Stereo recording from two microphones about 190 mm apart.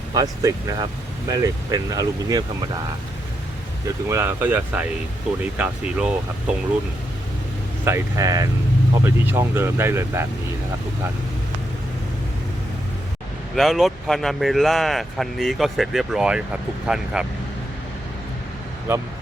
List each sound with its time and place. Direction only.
0.1 s speech: 20° right (ahead or behind)
3.8 s speech: 15° right (ahead or behind)
7.9 s speech: 15° right (ahead or behind)
13.6 s speech: centre (ahead or behind)
18.9 s speech: 10° right (ahead or behind)